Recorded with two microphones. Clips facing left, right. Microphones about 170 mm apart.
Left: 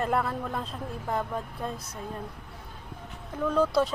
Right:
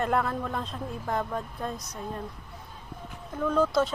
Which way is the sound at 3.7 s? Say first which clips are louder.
Even; 35° left (ahead or behind).